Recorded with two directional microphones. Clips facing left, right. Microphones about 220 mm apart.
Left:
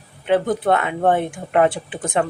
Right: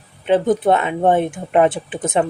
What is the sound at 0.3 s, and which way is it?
Speech, 20° right (ahead or behind).